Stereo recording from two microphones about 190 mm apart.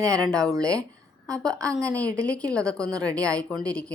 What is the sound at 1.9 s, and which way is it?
A woman's voice, 5° left (ahead or behind).